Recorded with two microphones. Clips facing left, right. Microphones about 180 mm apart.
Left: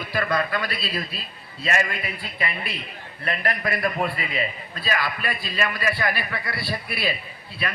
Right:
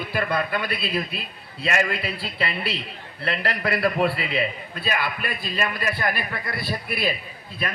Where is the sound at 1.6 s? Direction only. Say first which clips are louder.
Right 2 dB; 75° right (ahead or behind).